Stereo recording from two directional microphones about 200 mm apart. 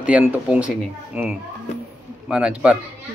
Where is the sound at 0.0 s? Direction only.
5° right (ahead or behind).